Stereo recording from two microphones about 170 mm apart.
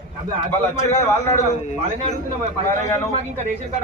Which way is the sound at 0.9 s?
15° left (ahead or behind).